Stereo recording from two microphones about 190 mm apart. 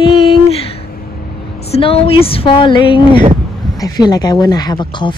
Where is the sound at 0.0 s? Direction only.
30° left (ahead or behind).